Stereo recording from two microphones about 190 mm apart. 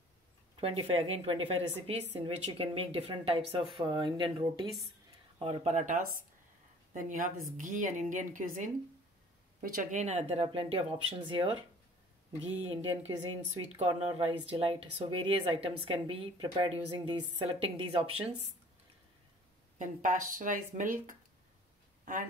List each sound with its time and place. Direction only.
0.6 s a woman's voice: 30° right (ahead or behind)
12.4 s speech: 90° right
13.7 s a woman's voice: 30° right (ahead or behind)
19.8 s speech: 45° right (ahead or behind)